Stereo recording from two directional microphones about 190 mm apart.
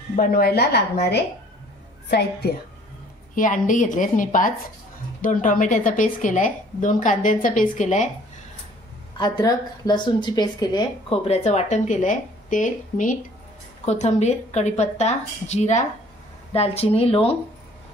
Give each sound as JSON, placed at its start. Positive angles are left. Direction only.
{"t": 0.1, "sound": "a woman's voice", "side_deg": 50}
{"t": 3.3, "sound": "a woman's voice", "side_deg": 45}
{"t": 9.2, "sound": "speech", "side_deg": 20}